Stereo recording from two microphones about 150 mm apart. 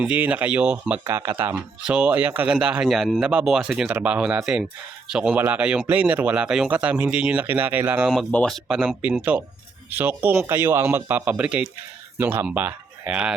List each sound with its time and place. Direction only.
0.0 s speech: 10° right (ahead or behind)